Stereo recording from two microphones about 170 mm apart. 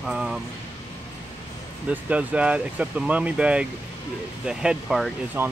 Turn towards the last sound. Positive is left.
turn(degrees=-10)  # may be behind; listen again after turning